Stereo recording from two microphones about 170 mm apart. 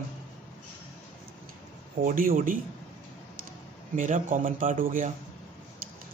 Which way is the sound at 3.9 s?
50° right (ahead or behind).